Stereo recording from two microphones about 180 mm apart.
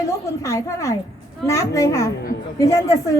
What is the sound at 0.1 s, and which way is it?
A woman's voice, 15° left (ahead or behind).